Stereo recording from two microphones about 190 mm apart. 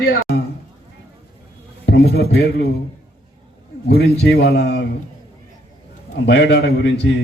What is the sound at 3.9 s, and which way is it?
Speech, 60° left (ahead or behind).